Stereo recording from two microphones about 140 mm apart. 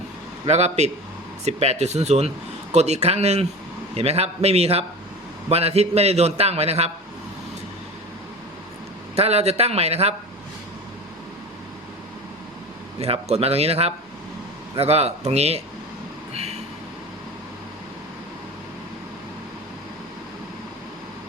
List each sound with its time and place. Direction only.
0.4 s a man's voice: 50° right (ahead or behind)
9.1 s a man's voice: 45° right (ahead or behind)
13.0 s a man's voice: 45° right (ahead or behind)